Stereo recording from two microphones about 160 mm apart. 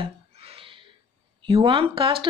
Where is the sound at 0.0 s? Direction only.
35° right (ahead or behind).